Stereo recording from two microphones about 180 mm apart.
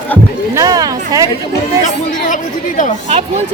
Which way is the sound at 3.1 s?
35° right (ahead or behind).